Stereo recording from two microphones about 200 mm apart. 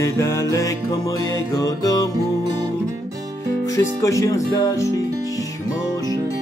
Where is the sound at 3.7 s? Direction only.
15° left (ahead or behind).